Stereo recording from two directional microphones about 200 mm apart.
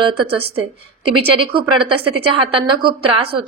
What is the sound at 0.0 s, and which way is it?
A woman's voice, 25° right (ahead or behind).